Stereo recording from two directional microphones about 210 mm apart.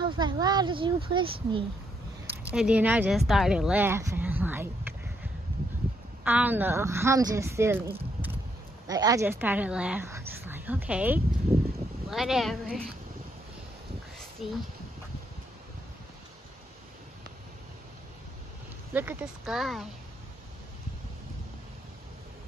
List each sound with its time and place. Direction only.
0.0 s speech: 20° right (ahead or behind)
2.5 s speech: 5° right (ahead or behind)
6.2 s speech: 10° right (ahead or behind)
14.4 s speech: centre (ahead or behind)
18.9 s speech: 10° right (ahead or behind)